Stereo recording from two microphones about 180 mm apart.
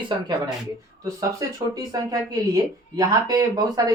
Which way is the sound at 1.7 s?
20° right (ahead or behind).